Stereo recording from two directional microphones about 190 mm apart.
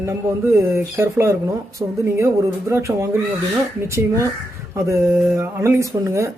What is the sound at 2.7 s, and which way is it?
Speech, 15° right (ahead or behind).